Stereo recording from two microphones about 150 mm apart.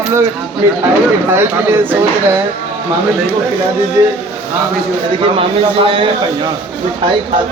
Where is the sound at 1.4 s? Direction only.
15° right (ahead or behind).